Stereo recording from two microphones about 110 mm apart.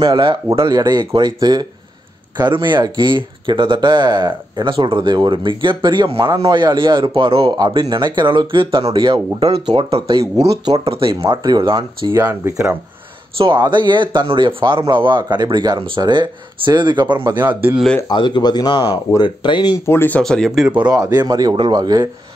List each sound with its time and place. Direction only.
0.0 s speech: 45° right (ahead or behind)
6.1 s speech: 35° right (ahead or behind); by 7.5 s 55° right (ahead or behind)
7.5 s speech: 40° right (ahead or behind); by 10.1 s 60° right (ahead or behind)
10.5 s speech: 40° right (ahead or behind)
10.8 s speech: 55° right (ahead or behind)
11.4 s speech: 40° right (ahead or behind)
12.3 s speech: 25° right (ahead or behind)
13.4 s speech: 45° right (ahead or behind)
17.4 s speech: 20° right (ahead or behind)
18.0 s speech: 45° left (ahead or behind)
19.9 s speech: 20° left (ahead or behind)
20.2 s speech: 5° left (ahead or behind)
20.9 s speech: 35° right (ahead or behind)